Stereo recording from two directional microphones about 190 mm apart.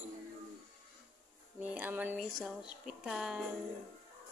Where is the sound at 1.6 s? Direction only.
10° right (ahead or behind).